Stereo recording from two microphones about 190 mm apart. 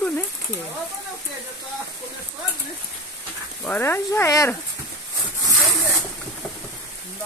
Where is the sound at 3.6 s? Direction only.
10° left (ahead or behind).